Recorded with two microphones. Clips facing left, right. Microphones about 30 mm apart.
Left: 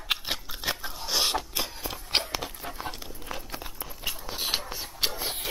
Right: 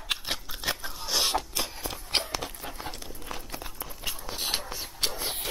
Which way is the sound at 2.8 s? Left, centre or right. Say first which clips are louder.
Left 2 dB; centre.